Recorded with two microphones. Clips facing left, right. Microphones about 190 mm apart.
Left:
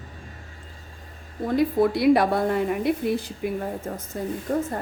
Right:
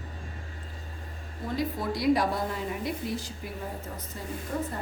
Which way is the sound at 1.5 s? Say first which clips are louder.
Left 10 dB; 60° left (ahead or behind).